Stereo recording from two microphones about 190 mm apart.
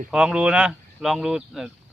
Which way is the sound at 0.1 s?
5° right (ahead or behind).